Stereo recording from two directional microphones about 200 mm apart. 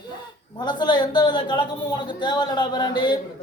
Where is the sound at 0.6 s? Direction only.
20° left (ahead or behind).